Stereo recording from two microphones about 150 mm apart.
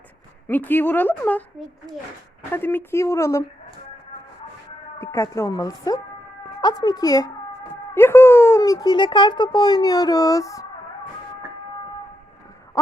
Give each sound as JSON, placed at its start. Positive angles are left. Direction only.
{"t": 0.4, "sound": "a woman's voice", "side_deg": 15}
{"t": 2.5, "sound": "a woman's voice", "side_deg": 15}
{"t": 4.9, "sound": "speech", "side_deg": 20}
{"t": 12.8, "sound": "a sound", "side_deg": 20}